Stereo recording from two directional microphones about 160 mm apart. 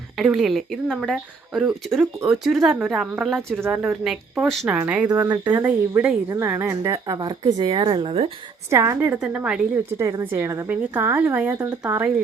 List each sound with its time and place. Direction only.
0.2 s a woman's voice: centre (ahead or behind)
5.0 s speech: 20° right (ahead or behind)
8.7 s a woman's voice: 20° right (ahead or behind)
10.0 s a woman's voice: 20° right (ahead or behind)